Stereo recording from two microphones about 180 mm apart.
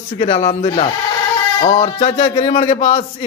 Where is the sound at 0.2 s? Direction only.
35° left (ahead or behind).